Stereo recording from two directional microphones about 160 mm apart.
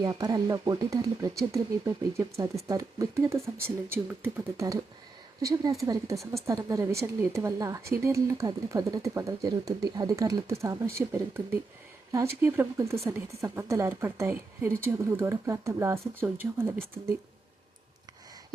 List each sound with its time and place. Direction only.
0.0 s speech: 25° right (ahead or behind)